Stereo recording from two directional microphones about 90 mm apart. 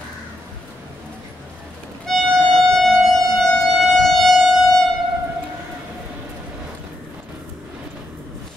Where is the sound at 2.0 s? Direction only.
5° left (ahead or behind).